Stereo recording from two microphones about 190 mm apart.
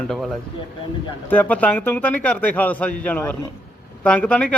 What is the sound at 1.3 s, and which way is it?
Speech, 10° left (ahead or behind).